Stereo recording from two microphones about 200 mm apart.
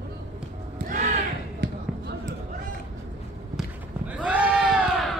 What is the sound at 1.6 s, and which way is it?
Basketball bounce, 55° right (ahead or behind).